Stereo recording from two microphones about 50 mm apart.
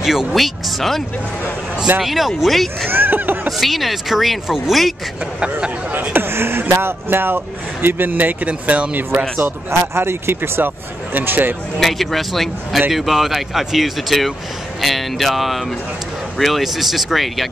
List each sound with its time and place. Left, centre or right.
0.0 s speech: centre
2.9 s speech: right
3.4 s speech: centre
5.2 s speech: right
5.9 s speech: right
9.4 s speech: right
11.1 s speech: right
11.8 s speech: centre